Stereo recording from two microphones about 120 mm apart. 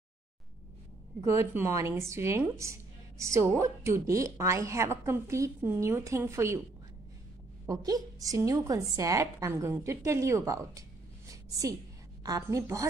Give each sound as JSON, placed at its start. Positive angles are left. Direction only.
{"t": 1.2, "sound": "a woman's voice", "side_deg": -20}
{"t": 7.6, "sound": "a woman's voice", "side_deg": -30}
{"t": 11.2, "sound": "a sound", "side_deg": -30}
{"t": 12.2, "sound": "a woman's voice", "side_deg": -30}